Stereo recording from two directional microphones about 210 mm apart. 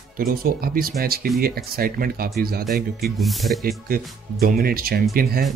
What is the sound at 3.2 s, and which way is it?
Speech, centre (ahead or behind).